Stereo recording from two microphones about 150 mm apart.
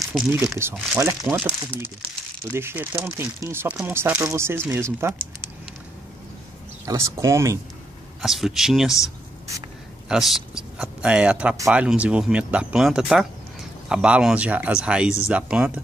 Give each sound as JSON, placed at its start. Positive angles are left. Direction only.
{"t": 0.1, "sound": "a man's voice", "side_deg": -5}
{"t": 0.6, "sound": "speech", "side_deg": -15}
{"t": 6.9, "sound": "speech", "side_deg": -20}
{"t": 8.2, "sound": "a man's voice", "side_deg": 0}
{"t": 10.0, "sound": "speech", "side_deg": -5}